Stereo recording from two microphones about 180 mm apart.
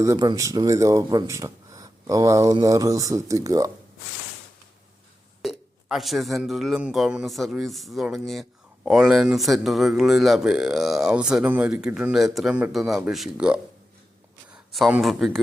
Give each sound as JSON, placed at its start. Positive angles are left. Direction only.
{"t": 0.0, "sound": "speech", "side_deg": -20}
{"t": 5.4, "sound": "speech", "side_deg": 0}